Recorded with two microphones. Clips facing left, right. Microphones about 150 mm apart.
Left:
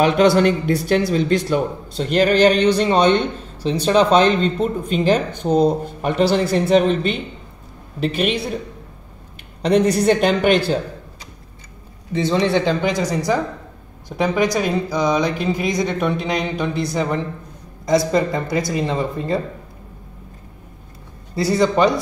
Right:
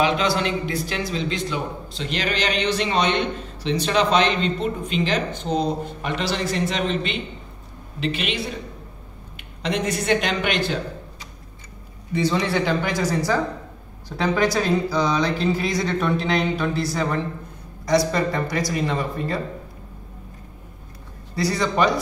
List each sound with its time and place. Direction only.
0.0 s speech: 50° left (ahead or behind)
9.6 s speech: 40° left (ahead or behind)
12.2 s speech: 25° left (ahead or behind)
14.0 s speech: 15° left (ahead or behind)
21.4 s speech: 25° left (ahead or behind)